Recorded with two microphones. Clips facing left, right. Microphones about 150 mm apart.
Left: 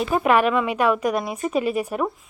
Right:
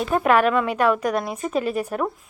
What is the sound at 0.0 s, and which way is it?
A woman's voice, 5° left (ahead or behind).